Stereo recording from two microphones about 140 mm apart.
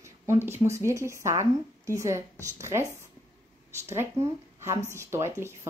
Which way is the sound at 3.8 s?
20° right (ahead or behind).